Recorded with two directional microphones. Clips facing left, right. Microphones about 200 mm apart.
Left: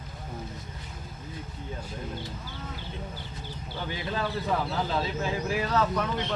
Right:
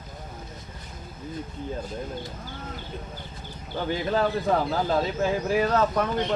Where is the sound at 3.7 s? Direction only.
50° right (ahead or behind).